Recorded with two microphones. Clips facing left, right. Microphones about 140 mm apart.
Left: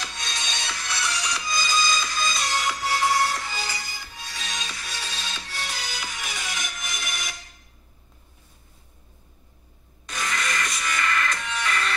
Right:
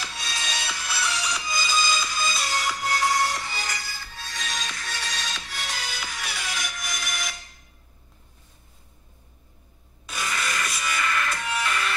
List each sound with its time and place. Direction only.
0.0 s music: 5° right (ahead or behind)
10.0 s music: 5° right (ahead or behind)